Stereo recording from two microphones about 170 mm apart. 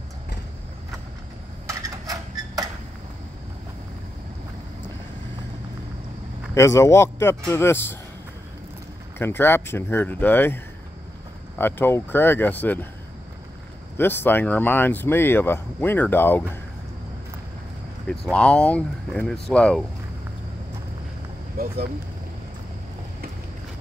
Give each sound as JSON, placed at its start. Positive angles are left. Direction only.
{"t": 1.7, "sound": "a sound", "side_deg": -20}
{"t": 6.5, "sound": "speech", "side_deg": 15}
{"t": 9.2, "sound": "speech", "side_deg": 15}
{"t": 13.9, "sound": "speech", "side_deg": 10}
{"t": 18.0, "sound": "speech", "side_deg": 5}